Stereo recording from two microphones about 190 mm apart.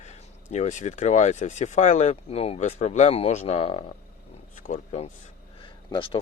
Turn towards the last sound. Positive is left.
turn(degrees=25)  # may be behind; listen again after turning